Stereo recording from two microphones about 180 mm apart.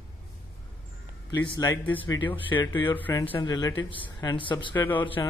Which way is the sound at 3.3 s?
25° left (ahead or behind).